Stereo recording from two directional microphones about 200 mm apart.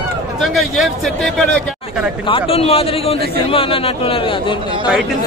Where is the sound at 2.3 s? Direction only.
30° left (ahead or behind).